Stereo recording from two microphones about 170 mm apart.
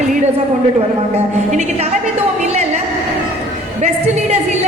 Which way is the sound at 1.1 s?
40° right (ahead or behind).